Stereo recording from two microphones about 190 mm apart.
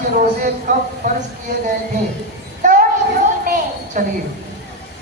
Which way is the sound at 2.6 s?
40° right (ahead or behind).